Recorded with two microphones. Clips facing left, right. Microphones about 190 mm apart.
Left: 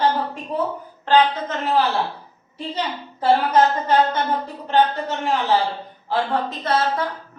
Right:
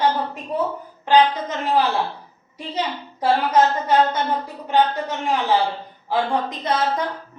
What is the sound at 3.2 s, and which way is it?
A woman's voice, 10° right (ahead or behind).